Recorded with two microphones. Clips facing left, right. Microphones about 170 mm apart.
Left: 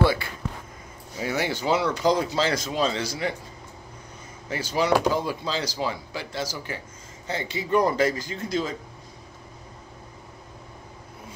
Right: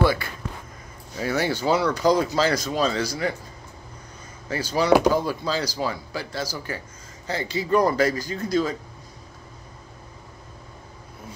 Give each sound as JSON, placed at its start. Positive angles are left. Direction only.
{"t": 1.1, "sound": "speech", "side_deg": 15}
{"t": 4.5, "sound": "speech", "side_deg": 20}